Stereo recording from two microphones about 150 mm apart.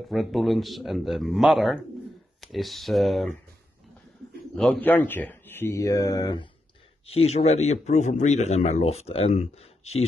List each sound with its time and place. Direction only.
0.1 s speech: centre (ahead or behind)
4.6 s speech: 10° left (ahead or behind); by 6.5 s 30° left (ahead or behind)
7.1 s a man's voice: 40° left (ahead or behind)